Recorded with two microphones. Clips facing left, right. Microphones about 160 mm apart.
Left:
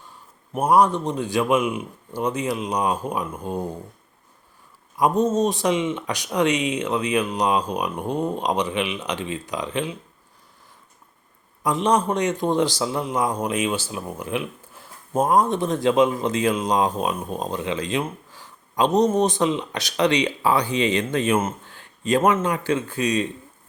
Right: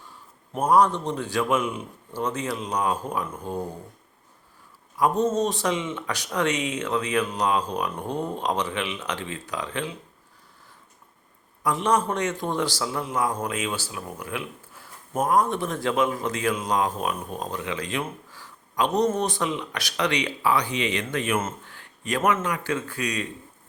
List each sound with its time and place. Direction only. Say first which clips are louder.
0.5 s speech: left 2 dB; 10° left (ahead or behind)
4.9 s speech: left 3 dB; 15° left (ahead or behind)
11.6 s a man's voice: left 3 dB; 20° left (ahead or behind)